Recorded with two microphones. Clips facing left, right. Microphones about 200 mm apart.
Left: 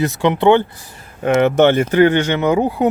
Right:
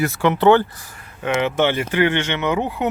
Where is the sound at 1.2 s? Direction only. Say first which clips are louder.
Left 7 dB; 45° left (ahead or behind).